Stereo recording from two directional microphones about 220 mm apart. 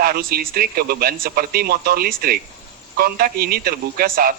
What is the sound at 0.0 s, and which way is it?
A man's voice, 40° right (ahead or behind).